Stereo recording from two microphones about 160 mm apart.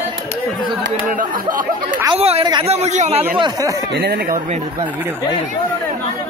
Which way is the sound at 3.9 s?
90° right.